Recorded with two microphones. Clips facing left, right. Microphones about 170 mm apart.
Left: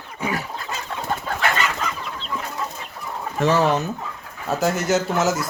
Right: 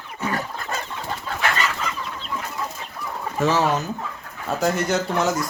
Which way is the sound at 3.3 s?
Centre (ahead or behind).